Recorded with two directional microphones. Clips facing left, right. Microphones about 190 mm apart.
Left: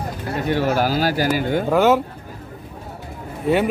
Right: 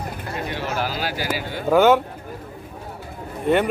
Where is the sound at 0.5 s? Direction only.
45° left (ahead or behind).